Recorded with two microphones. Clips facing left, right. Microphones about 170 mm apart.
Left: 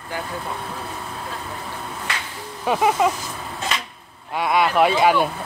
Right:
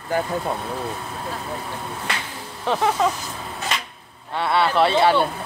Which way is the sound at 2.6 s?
10° left (ahead or behind).